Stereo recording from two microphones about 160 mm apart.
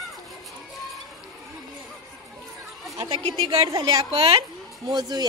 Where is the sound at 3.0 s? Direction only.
30° right (ahead or behind).